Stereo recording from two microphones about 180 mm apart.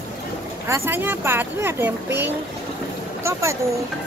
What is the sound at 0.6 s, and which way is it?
Speech, 15° right (ahead or behind).